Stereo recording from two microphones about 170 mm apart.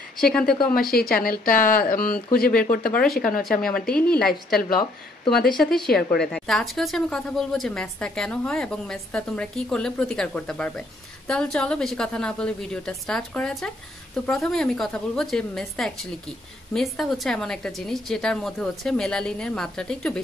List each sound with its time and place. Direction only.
0.2 s a woman's voice: 5° left (ahead or behind)
0.7 s speech: 60° left (ahead or behind)
3.4 s a woman's voice: centre (ahead or behind)
5.6 s a woman's voice: centre (ahead or behind)